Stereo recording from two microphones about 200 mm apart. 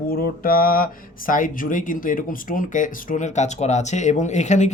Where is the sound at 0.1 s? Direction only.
45° left (ahead or behind).